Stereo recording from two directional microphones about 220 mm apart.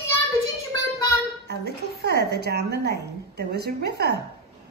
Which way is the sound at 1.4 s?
50° right (ahead or behind).